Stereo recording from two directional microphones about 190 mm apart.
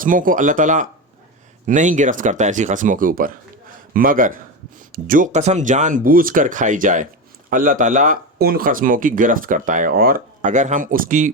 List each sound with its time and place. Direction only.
0.0 s speech: 45° right (ahead or behind)